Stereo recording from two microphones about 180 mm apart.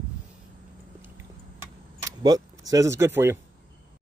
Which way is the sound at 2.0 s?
20° right (ahead or behind).